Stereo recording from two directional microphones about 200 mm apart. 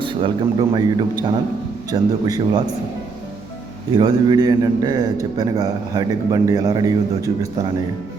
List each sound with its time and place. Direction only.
0.0 s a man's voice: 25° right (ahead or behind)
3.9 s a man's voice: 20° right (ahead or behind)